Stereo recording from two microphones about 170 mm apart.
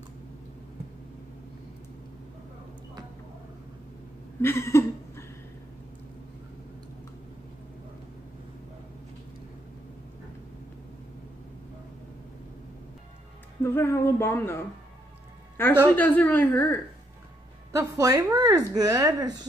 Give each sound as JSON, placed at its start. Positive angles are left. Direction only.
{"t": 4.4, "sound": "a sound", "side_deg": 15}
{"t": 13.6, "sound": "speech", "side_deg": 15}
{"t": 15.5, "sound": "music", "side_deg": 10}
{"t": 16.0, "sound": "speech", "side_deg": 10}
{"t": 17.7, "sound": "speech", "side_deg": -20}